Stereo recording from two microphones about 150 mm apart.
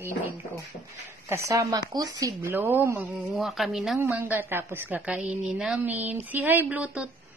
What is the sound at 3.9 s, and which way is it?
A woman's voice, 15° right (ahead or behind).